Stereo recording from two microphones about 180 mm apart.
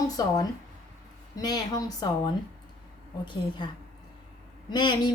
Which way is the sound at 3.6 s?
25° left (ahead or behind).